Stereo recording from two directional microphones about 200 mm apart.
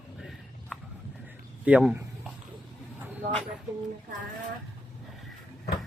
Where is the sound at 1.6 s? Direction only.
5° right (ahead or behind).